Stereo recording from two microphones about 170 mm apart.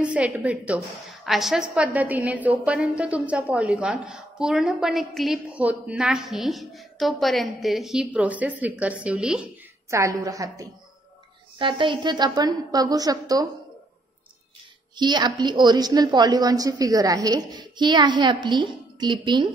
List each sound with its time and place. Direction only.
0.0 s a woman's voice: 5° right (ahead or behind)
9.8 s a woman's voice: 15° right (ahead or behind)
11.5 s a woman's voice: 30° right (ahead or behind)
15.0 s a woman's voice: 25° right (ahead or behind)